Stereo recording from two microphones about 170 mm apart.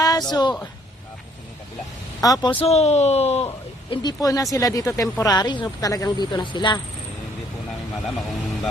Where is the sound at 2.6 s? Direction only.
40° left (ahead or behind).